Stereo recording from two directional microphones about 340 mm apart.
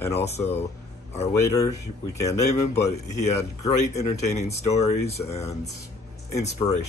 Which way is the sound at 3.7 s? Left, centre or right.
Centre.